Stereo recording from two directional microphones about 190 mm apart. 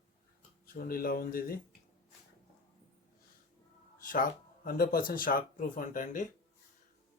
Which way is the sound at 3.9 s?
50° left (ahead or behind).